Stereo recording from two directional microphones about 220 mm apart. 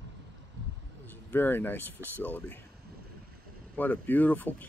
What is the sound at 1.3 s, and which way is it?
Speech, 10° left (ahead or behind).